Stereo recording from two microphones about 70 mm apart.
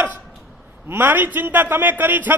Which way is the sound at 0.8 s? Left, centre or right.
Right.